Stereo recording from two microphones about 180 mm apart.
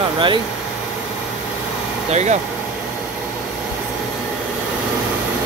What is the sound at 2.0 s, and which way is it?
Speech, 40° right (ahead or behind).